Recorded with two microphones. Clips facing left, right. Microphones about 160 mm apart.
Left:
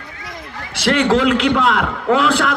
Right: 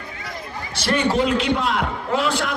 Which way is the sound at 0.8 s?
80° left.